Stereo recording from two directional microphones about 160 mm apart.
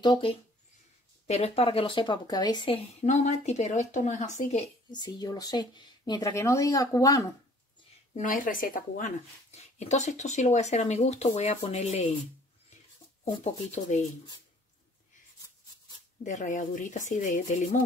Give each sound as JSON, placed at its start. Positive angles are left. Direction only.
{"t": 0.0, "sound": "a woman's voice", "side_deg": 30}
{"t": 4.9, "sound": "speech", "side_deg": 25}
{"t": 8.2, "sound": "a woman's voice", "side_deg": 55}
{"t": 13.2, "sound": "a woman's voice", "side_deg": 45}
{"t": 16.3, "sound": "a woman's voice", "side_deg": 50}